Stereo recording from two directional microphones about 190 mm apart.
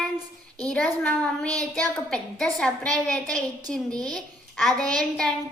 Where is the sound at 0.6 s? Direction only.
5° left (ahead or behind).